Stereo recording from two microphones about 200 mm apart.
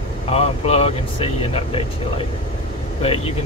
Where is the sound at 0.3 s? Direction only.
30° left (ahead or behind).